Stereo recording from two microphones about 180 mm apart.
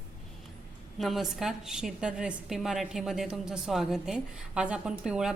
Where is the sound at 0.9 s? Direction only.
Centre (ahead or behind).